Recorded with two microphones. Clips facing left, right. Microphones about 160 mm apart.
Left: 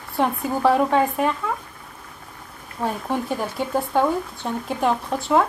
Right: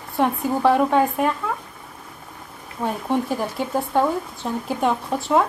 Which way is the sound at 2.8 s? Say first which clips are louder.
Right 2 dB; centre (ahead or behind).